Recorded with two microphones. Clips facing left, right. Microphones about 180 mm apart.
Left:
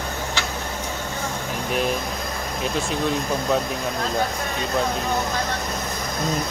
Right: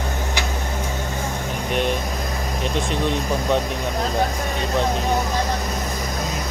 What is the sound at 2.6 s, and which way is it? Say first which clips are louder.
Speech: right 1 dB; centre (ahead or behind).